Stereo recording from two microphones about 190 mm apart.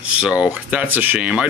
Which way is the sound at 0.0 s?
5° right (ahead or behind).